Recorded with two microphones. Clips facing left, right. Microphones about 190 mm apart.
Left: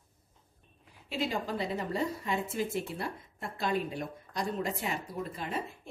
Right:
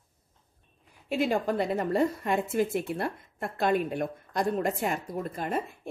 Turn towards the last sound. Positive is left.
turn(degrees=-50)  # may be behind; listen again after turning